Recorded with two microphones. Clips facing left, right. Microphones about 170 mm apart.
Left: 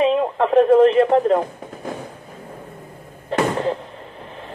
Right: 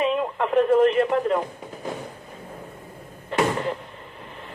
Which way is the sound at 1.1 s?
35° left (ahead or behind).